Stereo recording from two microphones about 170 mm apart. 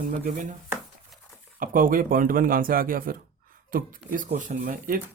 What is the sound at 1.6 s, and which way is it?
Speech, 55° right (ahead or behind).